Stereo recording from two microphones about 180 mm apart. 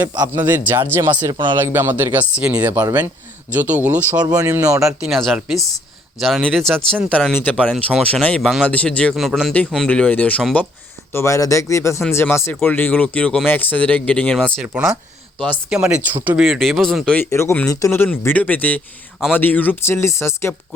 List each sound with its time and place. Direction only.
1.3 s a man's voice: 25° right (ahead or behind)
1.6 s speech: 10° right (ahead or behind)
5.0 s speech: centre (ahead or behind)
17.2 s speech: 15° left (ahead or behind)